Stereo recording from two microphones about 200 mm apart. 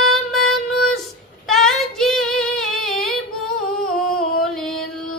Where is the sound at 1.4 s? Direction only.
Centre (ahead or behind).